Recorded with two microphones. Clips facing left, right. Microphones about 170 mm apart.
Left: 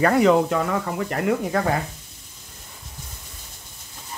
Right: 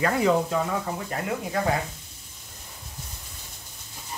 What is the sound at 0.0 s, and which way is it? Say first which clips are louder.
Speech: left 5 dB; 70° left (ahead or behind).